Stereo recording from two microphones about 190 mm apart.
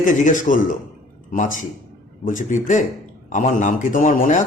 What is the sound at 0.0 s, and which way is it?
A man's voice, 40° left (ahead or behind).